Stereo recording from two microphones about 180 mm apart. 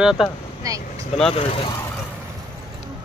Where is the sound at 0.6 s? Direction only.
20° right (ahead or behind).